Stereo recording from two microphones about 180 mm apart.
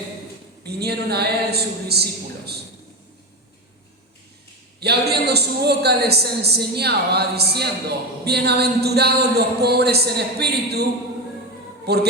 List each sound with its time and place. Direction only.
0.6 s a man's voice: 65° right (ahead or behind)
4.8 s a man's voice: 65° right (ahead or behind)